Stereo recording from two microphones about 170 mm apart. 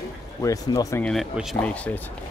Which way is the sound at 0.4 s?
20° left (ahead or behind).